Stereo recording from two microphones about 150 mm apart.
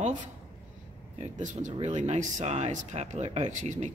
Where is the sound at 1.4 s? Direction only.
55° right (ahead or behind).